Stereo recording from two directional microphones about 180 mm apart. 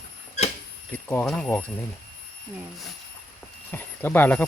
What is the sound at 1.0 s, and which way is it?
Speech, 10° left (ahead or behind).